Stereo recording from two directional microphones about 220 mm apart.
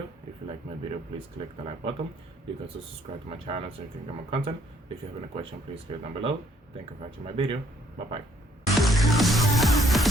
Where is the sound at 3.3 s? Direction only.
25° right (ahead or behind).